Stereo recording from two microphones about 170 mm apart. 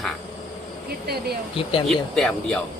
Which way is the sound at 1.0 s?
65° right (ahead or behind).